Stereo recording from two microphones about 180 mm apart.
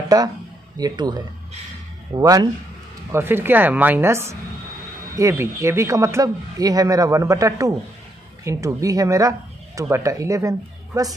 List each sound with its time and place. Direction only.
0.7 s speech: 20° right (ahead or behind)